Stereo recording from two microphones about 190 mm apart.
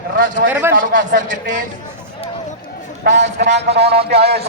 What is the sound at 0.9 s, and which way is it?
Speech, 75° right (ahead or behind).